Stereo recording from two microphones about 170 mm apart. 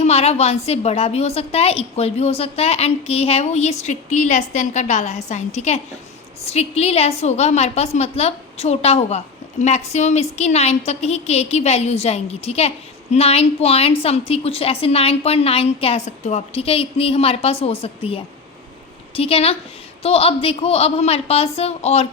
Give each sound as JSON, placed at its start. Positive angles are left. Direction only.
{"t": 0.0, "sound": "a woman's voice", "side_deg": 35}